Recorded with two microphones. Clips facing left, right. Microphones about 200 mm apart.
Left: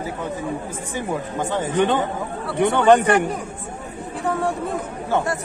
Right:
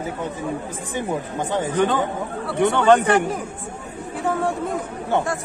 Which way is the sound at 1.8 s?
20° left (ahead or behind).